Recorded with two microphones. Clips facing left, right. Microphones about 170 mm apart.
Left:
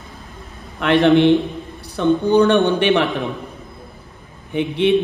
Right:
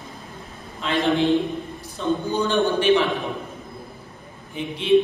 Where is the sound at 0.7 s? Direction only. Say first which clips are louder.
Left 8 dB; 70° left (ahead or behind).